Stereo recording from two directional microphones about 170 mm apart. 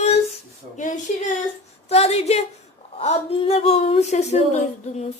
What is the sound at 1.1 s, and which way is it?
A woman's voice, 45° left (ahead or behind).